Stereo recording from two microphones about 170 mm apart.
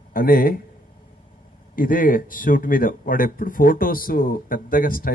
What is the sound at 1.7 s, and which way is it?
Speech, 55° left (ahead or behind).